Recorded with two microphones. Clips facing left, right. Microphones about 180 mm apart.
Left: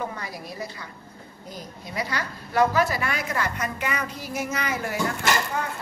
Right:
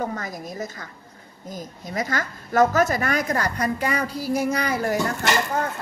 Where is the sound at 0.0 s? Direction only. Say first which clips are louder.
Right 4 dB; 45° right (ahead or behind).